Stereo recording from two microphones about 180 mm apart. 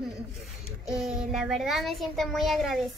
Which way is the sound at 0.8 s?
Centre (ahead or behind).